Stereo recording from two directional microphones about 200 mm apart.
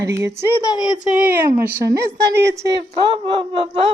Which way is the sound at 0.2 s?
15° right (ahead or behind).